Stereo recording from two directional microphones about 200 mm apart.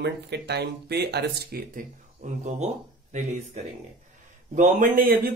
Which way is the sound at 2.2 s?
40° right (ahead or behind).